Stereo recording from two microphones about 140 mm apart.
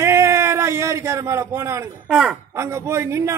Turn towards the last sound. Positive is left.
turn(degrees=-20)  # may be behind; listen again after turning